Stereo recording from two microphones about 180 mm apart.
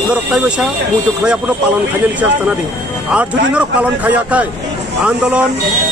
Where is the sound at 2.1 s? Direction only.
5° right (ahead or behind).